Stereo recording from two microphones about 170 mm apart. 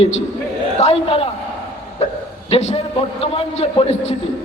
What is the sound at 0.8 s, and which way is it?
Speech, 35° left (ahead or behind).